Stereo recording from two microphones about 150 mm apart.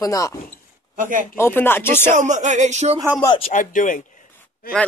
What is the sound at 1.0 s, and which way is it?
Speech, 60° right (ahead or behind).